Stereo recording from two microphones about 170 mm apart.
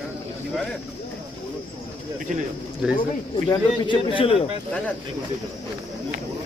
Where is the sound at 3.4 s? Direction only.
30° left (ahead or behind).